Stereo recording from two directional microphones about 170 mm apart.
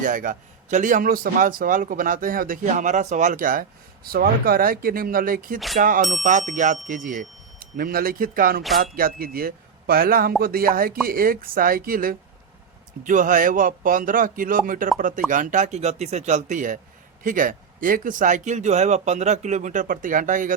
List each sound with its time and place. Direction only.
0.0 s a man's voice: 50° right (ahead or behind)
5.5 s speech: centre (ahead or behind)
5.8 s a man's voice: 55° right (ahead or behind)